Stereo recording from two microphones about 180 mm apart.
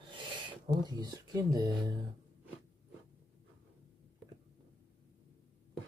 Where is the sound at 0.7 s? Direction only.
25° right (ahead or behind).